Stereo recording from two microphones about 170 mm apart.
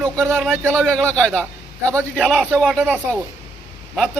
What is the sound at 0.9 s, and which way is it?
Speech, 5° left (ahead or behind).